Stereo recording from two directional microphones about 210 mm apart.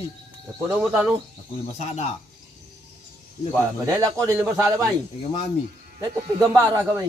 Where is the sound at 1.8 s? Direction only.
30° left (ahead or behind).